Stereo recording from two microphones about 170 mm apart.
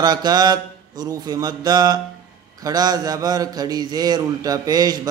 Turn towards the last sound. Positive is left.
turn(degrees=-20)  # may be behind; listen again after turning